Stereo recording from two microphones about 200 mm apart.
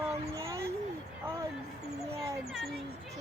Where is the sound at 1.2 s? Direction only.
10° right (ahead or behind).